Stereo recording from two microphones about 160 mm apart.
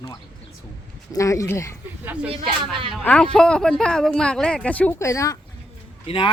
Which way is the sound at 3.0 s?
5° left (ahead or behind).